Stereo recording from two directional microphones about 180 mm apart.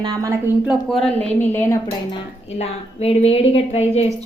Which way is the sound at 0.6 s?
Centre (ahead or behind).